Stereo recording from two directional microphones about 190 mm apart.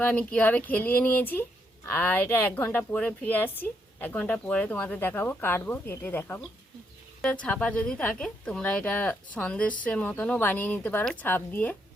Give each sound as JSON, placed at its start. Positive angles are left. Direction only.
{"t": 0.0, "sound": "a woman's voice", "side_deg": 5}